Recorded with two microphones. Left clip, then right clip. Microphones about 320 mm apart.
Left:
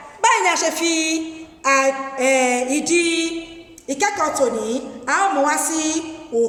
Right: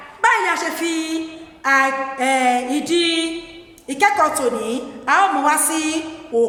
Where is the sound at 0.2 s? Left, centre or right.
Centre.